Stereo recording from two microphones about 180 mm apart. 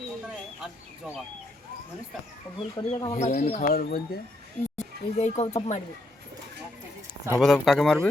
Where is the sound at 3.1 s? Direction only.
40° left (ahead or behind).